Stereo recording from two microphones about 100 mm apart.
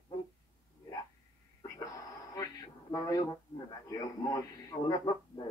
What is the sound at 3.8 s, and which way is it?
Radio, 35° left (ahead or behind).